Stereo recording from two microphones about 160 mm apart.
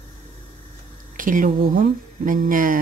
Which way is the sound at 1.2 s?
55° right (ahead or behind).